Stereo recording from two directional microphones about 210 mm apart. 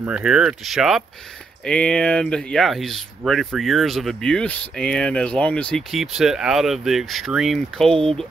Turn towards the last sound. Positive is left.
turn(degrees=0)  # may be behind; listen again after turning